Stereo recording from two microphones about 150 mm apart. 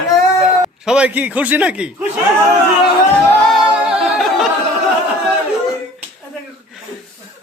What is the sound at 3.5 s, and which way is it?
A capella, 5° right (ahead or behind).